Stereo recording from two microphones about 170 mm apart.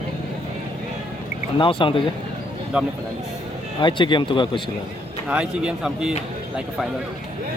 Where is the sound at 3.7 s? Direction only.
30° left (ahead or behind).